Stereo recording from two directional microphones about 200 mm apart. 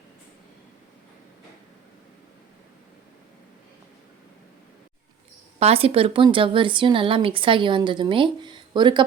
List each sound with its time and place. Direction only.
5.5 s speech: 30° right (ahead or behind)